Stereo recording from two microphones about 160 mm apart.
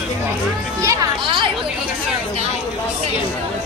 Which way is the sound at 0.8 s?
20° right (ahead or behind).